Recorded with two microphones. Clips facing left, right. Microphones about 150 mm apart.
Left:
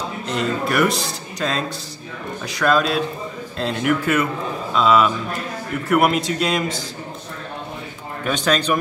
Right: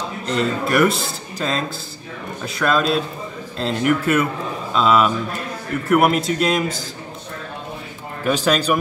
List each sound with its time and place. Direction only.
0.3 s speech: centre (ahead or behind)
8.3 s speech: 5° right (ahead or behind)